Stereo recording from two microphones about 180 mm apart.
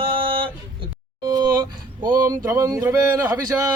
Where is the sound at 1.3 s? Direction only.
20° right (ahead or behind).